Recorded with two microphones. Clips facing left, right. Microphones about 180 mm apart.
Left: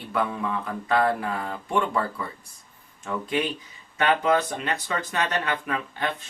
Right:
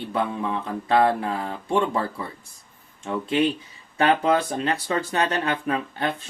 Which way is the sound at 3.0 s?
30° right (ahead or behind).